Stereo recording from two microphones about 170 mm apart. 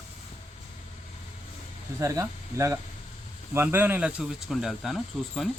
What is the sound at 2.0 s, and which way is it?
Speech, 20° right (ahead or behind).